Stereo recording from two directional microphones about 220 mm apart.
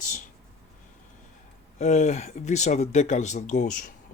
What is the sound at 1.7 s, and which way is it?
Speech, 30° left (ahead or behind).